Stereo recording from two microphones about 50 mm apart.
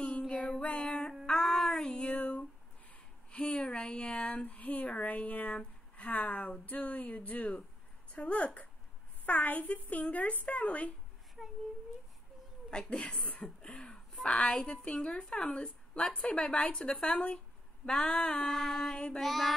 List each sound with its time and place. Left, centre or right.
0.6 s music: left
3.3 s a sound: left
9.2 s speech: left
11.4 s a sound: centre
12.7 s child singing: centre
14.2 s a woman's voice: left
18.4 s child singing: centre
19.2 s child singing: centre